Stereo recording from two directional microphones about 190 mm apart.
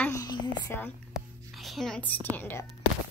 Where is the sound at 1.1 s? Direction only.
Centre (ahead or behind).